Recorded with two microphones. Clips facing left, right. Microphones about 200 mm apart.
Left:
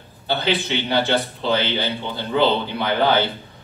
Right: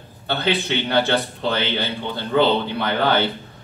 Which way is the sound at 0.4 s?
55° right (ahead or behind).